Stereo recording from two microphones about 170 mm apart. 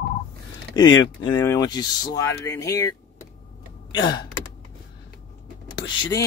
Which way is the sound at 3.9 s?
25° left (ahead or behind).